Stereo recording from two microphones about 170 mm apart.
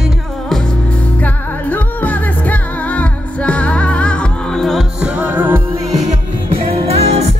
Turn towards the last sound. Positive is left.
turn(degrees=-35)  # may be behind; listen again after turning